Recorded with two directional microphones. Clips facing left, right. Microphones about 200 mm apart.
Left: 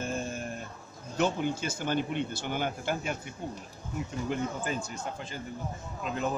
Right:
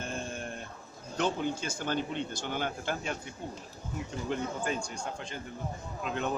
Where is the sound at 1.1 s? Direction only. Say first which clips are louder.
Left 2 dB; 10° left (ahead or behind).